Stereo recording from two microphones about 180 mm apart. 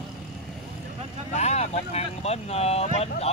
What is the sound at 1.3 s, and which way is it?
Speech, 35° left (ahead or behind).